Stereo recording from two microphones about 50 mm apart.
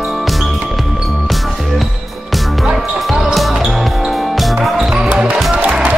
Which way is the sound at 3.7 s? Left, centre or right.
Centre.